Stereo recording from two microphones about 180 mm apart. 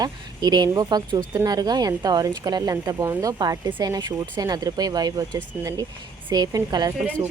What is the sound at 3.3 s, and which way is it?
A woman's voice, 25° right (ahead or behind).